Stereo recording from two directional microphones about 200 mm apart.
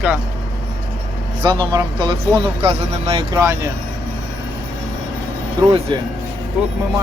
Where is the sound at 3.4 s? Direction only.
15° right (ahead or behind).